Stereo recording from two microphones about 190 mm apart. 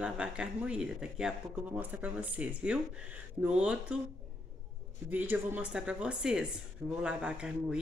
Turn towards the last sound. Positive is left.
turn(degrees=-5)  # may be behind; listen again after turning